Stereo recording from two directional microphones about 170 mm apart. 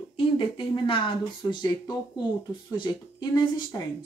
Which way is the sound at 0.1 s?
30° left (ahead or behind).